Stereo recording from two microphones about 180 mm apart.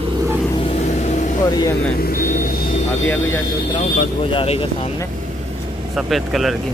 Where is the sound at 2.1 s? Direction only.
50° left (ahead or behind).